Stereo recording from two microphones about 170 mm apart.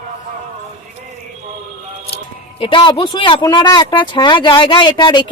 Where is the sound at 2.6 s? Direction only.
30° left (ahead or behind).